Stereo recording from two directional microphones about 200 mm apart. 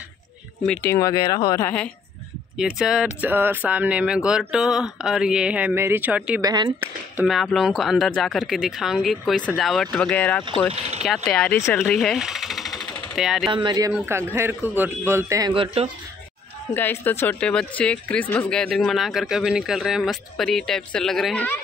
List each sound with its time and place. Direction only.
0.8 s speech: 15° left (ahead or behind)
2.5 s speech: 5° right (ahead or behind)
6.4 s speech: 20° right (ahead or behind)
7.2 s speech: centre (ahead or behind)
10.7 s speech: 35° right (ahead or behind)
11.2 s speech: 5° left (ahead or behind)
13.5 s a man's voice: 20° right (ahead or behind)
16.7 s speech: 10° left (ahead or behind)